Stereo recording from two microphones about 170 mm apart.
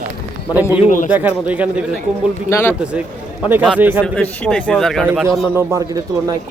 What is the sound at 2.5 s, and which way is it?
Speech, 10° left (ahead or behind).